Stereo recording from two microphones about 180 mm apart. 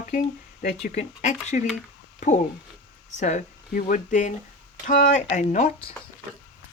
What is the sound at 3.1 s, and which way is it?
Speech, 40° left (ahead or behind).